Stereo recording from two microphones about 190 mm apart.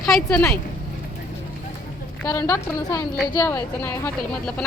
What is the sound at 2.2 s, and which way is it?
A woman's voice, 15° left (ahead or behind).